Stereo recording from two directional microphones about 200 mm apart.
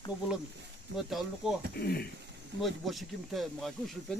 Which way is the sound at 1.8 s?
50° left (ahead or behind).